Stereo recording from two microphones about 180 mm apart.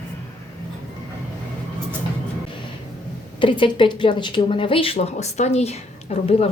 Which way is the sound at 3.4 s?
30° left (ahead or behind).